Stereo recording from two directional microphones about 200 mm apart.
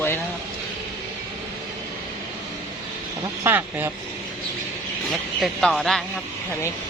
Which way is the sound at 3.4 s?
10° right (ahead or behind).